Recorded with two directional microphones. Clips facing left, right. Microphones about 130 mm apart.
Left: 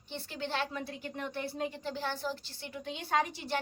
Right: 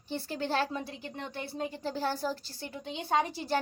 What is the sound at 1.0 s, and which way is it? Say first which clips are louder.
A woman's voice: left 1 dB; 25° right (ahead or behind).